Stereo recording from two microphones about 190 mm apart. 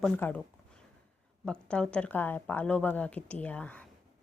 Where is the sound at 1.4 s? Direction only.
5° left (ahead or behind).